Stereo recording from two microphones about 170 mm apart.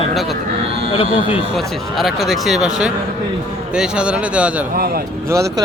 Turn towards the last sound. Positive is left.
turn(degrees=-20)  # may be behind; listen again after turning